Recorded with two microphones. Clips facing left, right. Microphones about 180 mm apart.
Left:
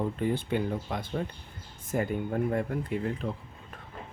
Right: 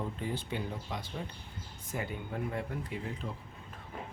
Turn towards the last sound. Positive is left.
turn(degrees=60)  # may be behind; listen again after turning